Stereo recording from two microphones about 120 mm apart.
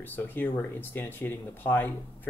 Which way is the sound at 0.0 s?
15° left (ahead or behind).